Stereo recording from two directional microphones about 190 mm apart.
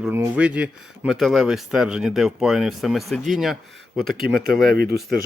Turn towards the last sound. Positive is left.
turn(degrees=-55)  # may be behind; listen again after turning